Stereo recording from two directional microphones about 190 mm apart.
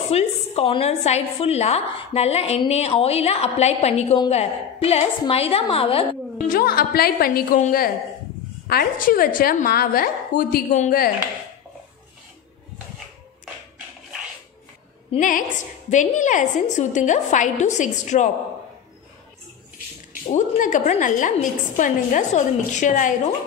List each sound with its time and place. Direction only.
0.1 s a woman's voice: 30° left (ahead or behind)
6.5 s a woman's voice: 50° left (ahead or behind)
15.1 s a woman's voice: 45° left (ahead or behind)
20.2 s a woman's voice: 40° left (ahead or behind)